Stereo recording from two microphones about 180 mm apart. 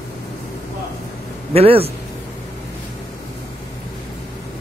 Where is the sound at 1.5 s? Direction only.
35° right (ahead or behind).